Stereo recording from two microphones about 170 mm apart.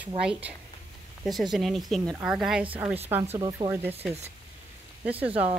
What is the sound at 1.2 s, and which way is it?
Speech, centre (ahead or behind).